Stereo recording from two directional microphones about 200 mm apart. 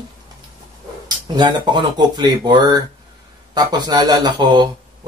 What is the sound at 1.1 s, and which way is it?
Speech, 20° right (ahead or behind).